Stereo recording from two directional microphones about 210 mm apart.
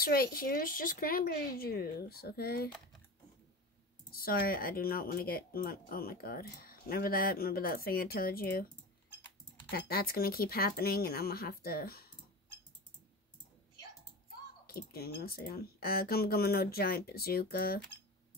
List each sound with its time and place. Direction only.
0.0 s speech: 45° left (ahead or behind)
4.1 s speech: 45° left (ahead or behind)
9.7 s speech: 45° left (ahead or behind)
14.7 s speech: 45° left (ahead or behind)